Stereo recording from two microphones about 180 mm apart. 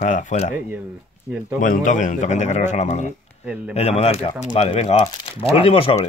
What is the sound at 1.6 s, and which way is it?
Speech, 45° left (ahead or behind).